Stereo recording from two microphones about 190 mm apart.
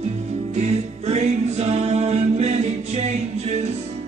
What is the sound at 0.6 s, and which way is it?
Music, 35° right (ahead or behind).